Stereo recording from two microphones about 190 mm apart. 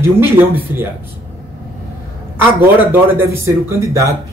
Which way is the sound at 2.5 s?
10° right (ahead or behind).